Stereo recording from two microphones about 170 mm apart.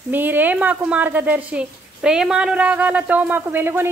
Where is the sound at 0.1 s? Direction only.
10° right (ahead or behind).